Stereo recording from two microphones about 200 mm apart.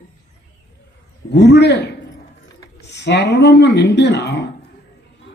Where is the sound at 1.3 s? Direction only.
60° left (ahead or behind).